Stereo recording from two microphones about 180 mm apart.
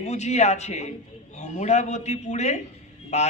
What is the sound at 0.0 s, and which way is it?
A man's voice, 40° left (ahead or behind).